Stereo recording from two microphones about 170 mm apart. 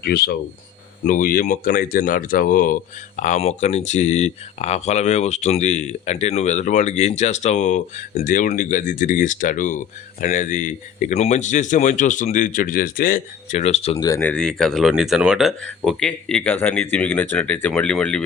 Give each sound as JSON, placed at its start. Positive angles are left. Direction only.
{"t": 0.0, "sound": "speech", "side_deg": 65}
{"t": 13.9, "sound": "speech", "side_deg": 20}